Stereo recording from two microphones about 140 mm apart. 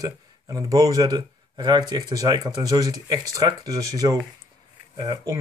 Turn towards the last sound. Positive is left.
turn(degrees=-30)  # may be behind; listen again after turning